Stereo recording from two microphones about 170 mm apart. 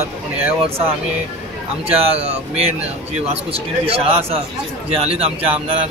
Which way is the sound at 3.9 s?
35° right (ahead or behind).